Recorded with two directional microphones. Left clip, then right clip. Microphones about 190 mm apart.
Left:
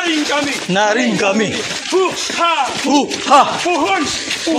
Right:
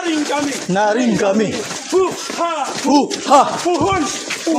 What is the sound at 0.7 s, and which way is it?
Speech, 10° right (ahead or behind).